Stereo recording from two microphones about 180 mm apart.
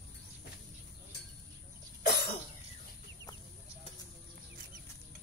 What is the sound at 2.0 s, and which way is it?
Cough, 60° left (ahead or behind).